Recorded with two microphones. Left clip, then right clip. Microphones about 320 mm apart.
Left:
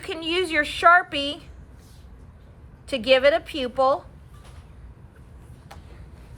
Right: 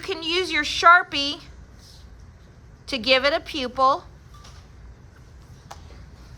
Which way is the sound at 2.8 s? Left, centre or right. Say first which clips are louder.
Left 2 dB; centre.